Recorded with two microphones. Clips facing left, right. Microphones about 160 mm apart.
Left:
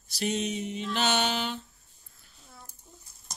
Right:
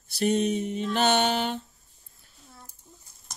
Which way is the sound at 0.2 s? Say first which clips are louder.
Right 6 dB; 50° right (ahead or behind).